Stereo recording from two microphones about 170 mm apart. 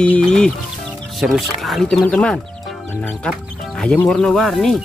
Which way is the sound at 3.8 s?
5° left (ahead or behind).